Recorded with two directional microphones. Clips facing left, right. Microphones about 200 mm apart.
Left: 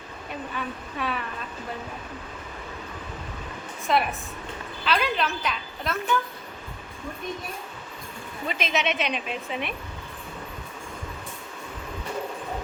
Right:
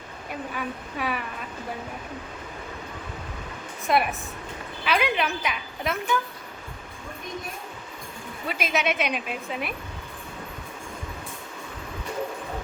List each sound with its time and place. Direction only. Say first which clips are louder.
0.5 s a woman's voice: right 1 dB; 10° right (ahead or behind)
3.9 s a woman's voice: right 1 dB; 10° right (ahead or behind)
8.4 s a woman's voice: right 1 dB; 10° right (ahead or behind)